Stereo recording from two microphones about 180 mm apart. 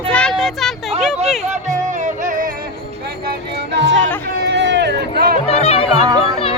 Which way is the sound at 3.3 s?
75° right (ahead or behind).